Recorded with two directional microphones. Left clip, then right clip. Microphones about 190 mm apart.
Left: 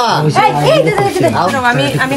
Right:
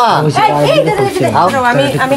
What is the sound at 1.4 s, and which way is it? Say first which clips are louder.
Speech: right 2 dB; 15° right (ahead or behind).